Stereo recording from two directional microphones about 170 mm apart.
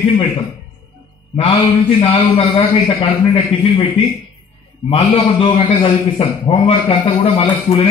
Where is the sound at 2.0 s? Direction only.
35° left (ahead or behind).